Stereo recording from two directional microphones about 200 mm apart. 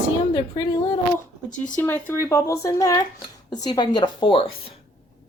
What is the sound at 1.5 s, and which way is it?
A woman's voice, 5° left (ahead or behind).